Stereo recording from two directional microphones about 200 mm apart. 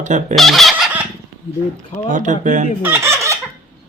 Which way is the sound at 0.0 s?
35° right (ahead or behind).